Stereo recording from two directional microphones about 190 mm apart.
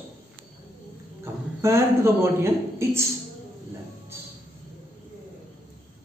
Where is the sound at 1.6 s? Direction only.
15° right (ahead or behind).